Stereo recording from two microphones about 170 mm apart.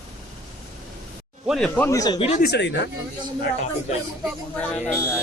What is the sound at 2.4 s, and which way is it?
Speech, 80° left.